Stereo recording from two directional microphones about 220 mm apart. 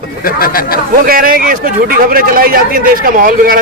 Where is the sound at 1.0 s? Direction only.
40° right (ahead or behind).